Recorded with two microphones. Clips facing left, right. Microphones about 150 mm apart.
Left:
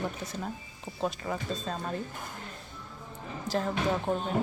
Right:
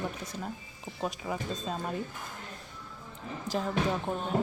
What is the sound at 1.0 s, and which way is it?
Speech, 5° right (ahead or behind).